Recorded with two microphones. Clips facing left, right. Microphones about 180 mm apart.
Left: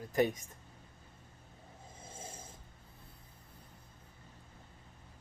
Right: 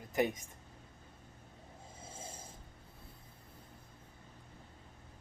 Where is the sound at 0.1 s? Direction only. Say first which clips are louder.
Left 2 dB; 20° right (ahead or behind).